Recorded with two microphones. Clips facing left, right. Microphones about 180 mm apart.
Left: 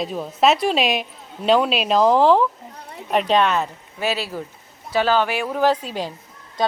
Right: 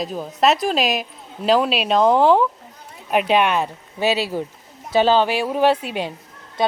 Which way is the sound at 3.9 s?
25° right (ahead or behind).